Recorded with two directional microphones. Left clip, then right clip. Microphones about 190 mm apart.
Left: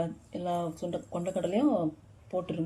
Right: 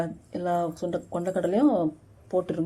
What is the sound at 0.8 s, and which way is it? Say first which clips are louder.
Speech: right 5 dB; 5° left (ahead or behind).